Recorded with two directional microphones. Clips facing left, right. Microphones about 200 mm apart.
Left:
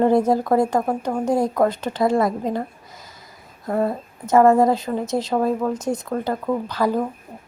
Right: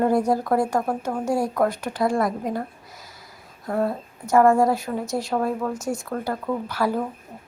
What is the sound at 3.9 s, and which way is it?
A woman's voice, 20° left (ahead or behind).